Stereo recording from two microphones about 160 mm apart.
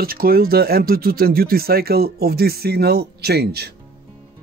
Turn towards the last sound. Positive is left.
turn(degrees=-80)